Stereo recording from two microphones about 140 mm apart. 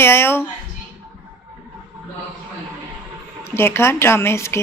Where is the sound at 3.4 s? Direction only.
15° left (ahead or behind).